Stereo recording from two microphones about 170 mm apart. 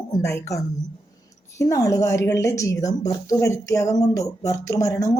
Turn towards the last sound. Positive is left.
turn(degrees=20)  # may be behind; listen again after turning